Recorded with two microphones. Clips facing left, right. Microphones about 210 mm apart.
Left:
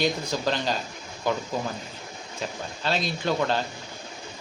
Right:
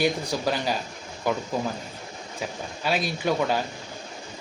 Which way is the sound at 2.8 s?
10° right (ahead or behind).